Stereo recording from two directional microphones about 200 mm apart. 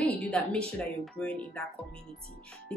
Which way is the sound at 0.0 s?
5° left (ahead or behind).